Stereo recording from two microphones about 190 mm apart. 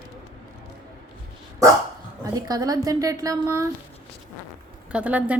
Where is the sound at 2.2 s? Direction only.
20° right (ahead or behind).